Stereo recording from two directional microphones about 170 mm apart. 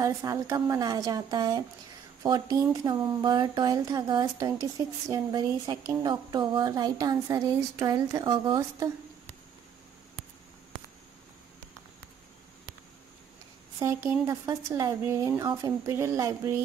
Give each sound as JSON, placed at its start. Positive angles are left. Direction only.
{"t": 0.0, "sound": "a woman's voice", "side_deg": -20}
{"t": 14.2, "sound": "a woman's voice", "side_deg": -20}